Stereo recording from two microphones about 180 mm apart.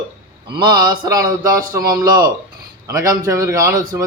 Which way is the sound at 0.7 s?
25° right (ahead or behind).